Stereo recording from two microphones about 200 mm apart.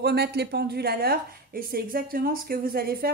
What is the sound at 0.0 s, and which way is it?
A woman's voice, 55° right (ahead or behind).